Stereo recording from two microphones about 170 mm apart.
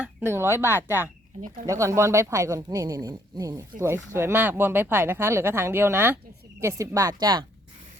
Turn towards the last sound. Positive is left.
turn(degrees=-25)  # may be behind; listen again after turning